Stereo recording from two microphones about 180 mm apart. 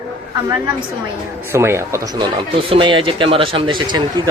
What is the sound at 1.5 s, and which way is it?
Speech, 15° right (ahead or behind).